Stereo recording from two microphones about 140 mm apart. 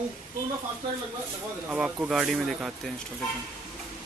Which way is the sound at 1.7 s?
10° right (ahead or behind).